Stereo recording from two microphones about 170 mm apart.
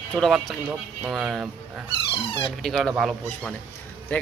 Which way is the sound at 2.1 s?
30° left (ahead or behind).